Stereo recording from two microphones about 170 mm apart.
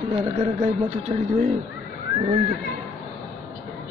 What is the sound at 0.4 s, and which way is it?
Speech, 45° right (ahead or behind).